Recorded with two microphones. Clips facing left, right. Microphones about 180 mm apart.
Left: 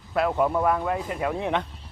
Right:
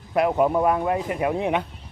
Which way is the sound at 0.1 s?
20° right (ahead or behind).